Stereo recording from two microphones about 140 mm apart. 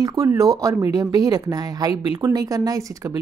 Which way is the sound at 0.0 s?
20° right (ahead or behind).